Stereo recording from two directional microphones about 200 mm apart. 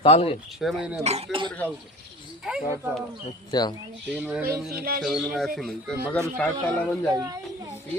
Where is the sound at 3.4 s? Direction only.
20° left (ahead or behind).